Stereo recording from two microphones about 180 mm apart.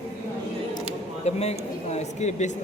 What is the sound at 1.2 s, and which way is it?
Speech, 35° left (ahead or behind).